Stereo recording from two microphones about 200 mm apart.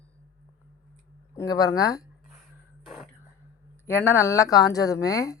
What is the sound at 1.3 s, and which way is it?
Speech, 15° left (ahead or behind).